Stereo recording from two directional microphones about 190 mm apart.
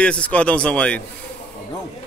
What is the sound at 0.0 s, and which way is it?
Speech, 5° left (ahead or behind).